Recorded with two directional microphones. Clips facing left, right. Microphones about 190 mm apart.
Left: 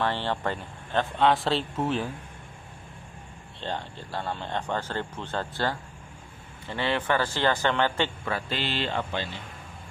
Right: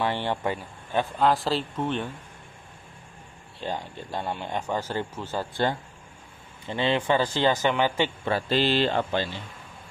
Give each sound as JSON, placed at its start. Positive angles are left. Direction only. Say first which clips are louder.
{"t": 0.0, "sound": "speech", "louder": "right 1 dB", "side_deg": -15}
{"t": 3.6, "sound": "speech", "louder": "right 2 dB", "side_deg": -10}
{"t": 8.3, "sound": "speech", "louder": "right 7 dB", "side_deg": -35}